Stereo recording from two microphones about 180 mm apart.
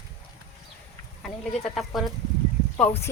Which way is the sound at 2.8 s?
15° left (ahead or behind).